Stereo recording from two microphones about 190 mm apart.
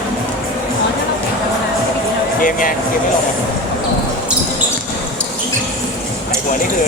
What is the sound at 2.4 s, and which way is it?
Speech, 45° left (ahead or behind).